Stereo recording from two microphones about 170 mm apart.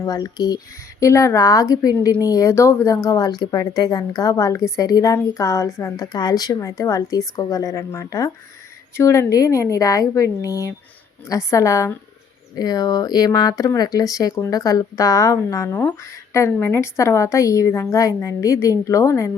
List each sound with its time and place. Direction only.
0.0 s a woman's voice: 20° left (ahead or behind)